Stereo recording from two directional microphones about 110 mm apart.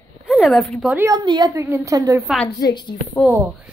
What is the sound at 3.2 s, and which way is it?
Speech, centre (ahead or behind).